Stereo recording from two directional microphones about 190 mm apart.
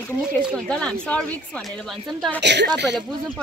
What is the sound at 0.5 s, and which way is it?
Speech, 5° left (ahead or behind).